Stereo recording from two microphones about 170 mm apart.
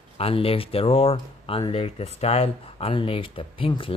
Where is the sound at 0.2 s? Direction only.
35° left (ahead or behind).